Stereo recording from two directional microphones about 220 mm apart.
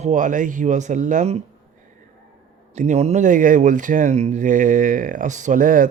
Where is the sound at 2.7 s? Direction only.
30° right (ahead or behind).